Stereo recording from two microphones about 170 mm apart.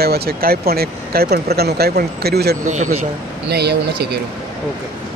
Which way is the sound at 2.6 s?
45° right (ahead or behind).